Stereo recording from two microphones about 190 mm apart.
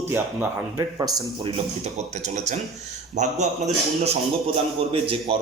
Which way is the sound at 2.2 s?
40° right (ahead or behind).